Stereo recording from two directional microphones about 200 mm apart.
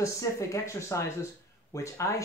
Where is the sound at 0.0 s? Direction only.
15° left (ahead or behind).